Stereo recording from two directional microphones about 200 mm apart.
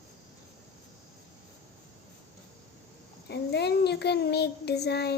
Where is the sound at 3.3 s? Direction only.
55° left (ahead or behind).